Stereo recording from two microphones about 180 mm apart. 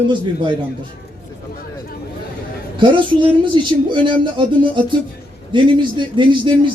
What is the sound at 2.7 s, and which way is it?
A man's voice, 25° right (ahead or behind).